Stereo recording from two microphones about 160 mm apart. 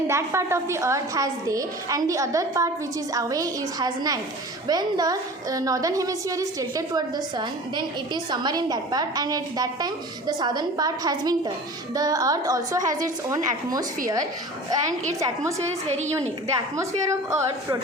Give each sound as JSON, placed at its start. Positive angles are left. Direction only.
{"t": 0.1, "sound": "a woman's voice", "side_deg": -15}
{"t": 15.2, "sound": "a woman's voice", "side_deg": -20}
{"t": 17.1, "sound": "a woman's voice", "side_deg": -20}